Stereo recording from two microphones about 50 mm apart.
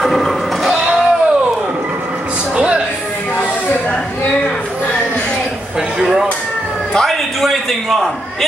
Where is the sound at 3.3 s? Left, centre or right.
Left.